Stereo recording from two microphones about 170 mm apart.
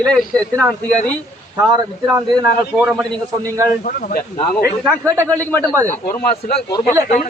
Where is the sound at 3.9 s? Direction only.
55° left (ahead or behind).